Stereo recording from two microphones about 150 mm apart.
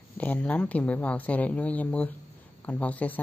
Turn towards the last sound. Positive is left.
turn(degrees=10)  # may be behind; listen again after turning